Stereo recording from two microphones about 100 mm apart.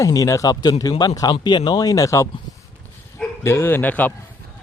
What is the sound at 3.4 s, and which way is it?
Speech, 25° left (ahead or behind).